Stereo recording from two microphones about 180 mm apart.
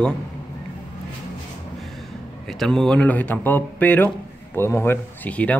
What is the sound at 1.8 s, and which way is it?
A man's voice, centre (ahead or behind).